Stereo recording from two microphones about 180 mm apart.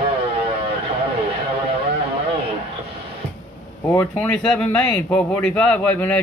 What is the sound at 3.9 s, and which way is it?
Speech, 10° left (ahead or behind).